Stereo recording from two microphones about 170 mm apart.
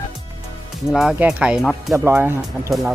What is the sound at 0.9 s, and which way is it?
Speech, 5° right (ahead or behind).